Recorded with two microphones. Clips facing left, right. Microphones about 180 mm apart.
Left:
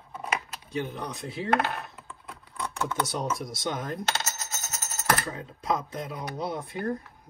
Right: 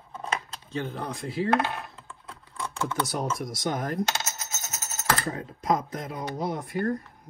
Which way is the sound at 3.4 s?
25° left (ahead or behind).